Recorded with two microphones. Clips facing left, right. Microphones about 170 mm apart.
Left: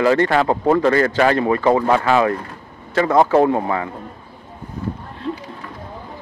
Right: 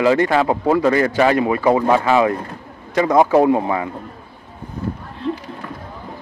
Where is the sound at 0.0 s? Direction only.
15° right (ahead or behind).